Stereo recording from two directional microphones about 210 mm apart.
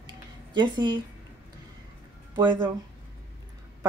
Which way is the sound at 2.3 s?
20° right (ahead or behind).